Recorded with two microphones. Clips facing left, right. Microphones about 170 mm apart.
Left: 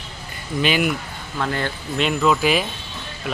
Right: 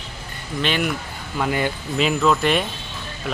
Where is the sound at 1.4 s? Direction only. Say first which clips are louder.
Right 2 dB; 10° right (ahead or behind).